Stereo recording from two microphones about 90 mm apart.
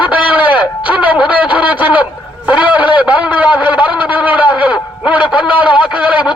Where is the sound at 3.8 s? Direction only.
60° left (ahead or behind).